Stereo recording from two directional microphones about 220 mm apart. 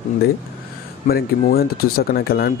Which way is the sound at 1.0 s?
45° left (ahead or behind).